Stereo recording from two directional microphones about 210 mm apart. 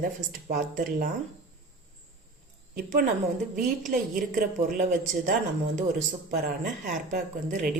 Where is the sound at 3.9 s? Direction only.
40° right (ahead or behind).